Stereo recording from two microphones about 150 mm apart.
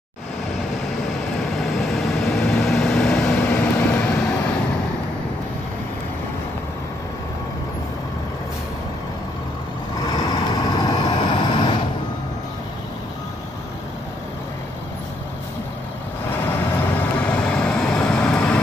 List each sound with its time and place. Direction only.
1.6 s vehicle: centre (ahead or behind)
10.0 s vehicle: 30° left (ahead or behind)
16.3 s vehicle: 15° left (ahead or behind)